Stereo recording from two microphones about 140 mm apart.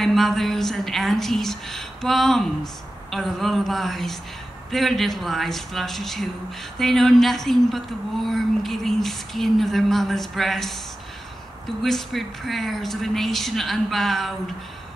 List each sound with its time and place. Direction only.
0.0 s speech: centre (ahead or behind)
11.8 s speech: centre (ahead or behind)